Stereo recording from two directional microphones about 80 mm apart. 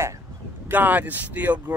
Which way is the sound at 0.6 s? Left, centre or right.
Right.